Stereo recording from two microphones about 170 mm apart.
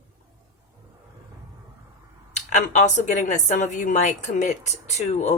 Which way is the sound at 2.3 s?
45° left (ahead or behind).